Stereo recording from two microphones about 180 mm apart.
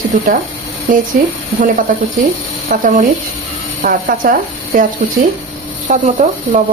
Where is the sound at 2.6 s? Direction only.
50° right (ahead or behind).